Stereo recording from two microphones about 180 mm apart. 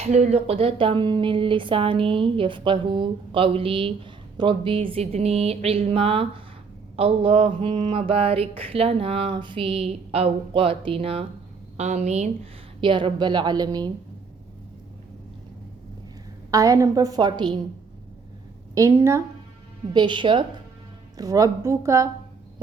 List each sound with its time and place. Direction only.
0.0 s speech: 35° right (ahead or behind)
6.9 s a sound: 30° right (ahead or behind)
12.8 s speech: 25° right (ahead or behind)
16.5 s speech: 20° right (ahead or behind)
18.7 s a woman's voice: 15° right (ahead or behind)
19.9 s a woman's voice: 25° right (ahead or behind)